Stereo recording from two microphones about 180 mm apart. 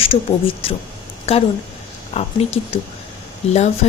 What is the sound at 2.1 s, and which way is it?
Speech, 35° left (ahead or behind).